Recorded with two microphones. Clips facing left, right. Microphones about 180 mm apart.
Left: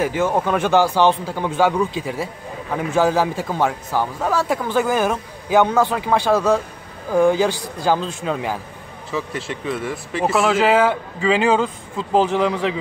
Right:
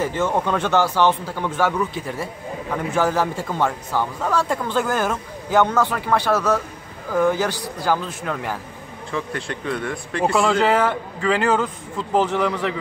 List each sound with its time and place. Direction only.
0.0 s a man's voice: 10° left (ahead or behind)
9.1 s a man's voice: 5° left (ahead or behind); by 12.7 s 20° left (ahead or behind)